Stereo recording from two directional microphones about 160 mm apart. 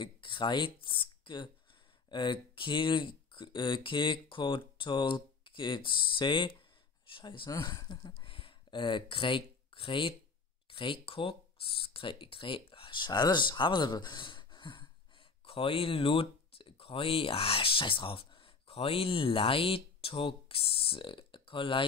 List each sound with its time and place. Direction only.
0.0 s speech: 30° left (ahead or behind)